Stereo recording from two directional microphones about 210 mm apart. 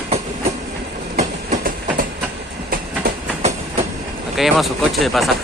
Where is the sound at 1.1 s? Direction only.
40° right (ahead or behind).